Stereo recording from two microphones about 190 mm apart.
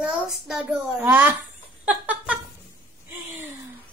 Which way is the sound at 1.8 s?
10° right (ahead or behind).